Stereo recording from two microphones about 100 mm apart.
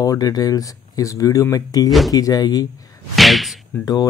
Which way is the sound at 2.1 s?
40° left (ahead or behind).